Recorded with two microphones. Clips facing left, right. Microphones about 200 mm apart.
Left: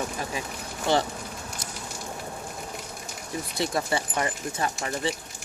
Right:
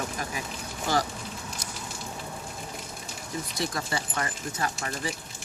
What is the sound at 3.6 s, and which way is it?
Speech, 25° left (ahead or behind).